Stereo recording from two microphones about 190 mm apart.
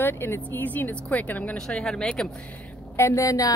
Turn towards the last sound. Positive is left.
turn(degrees=15)  # may be behind; listen again after turning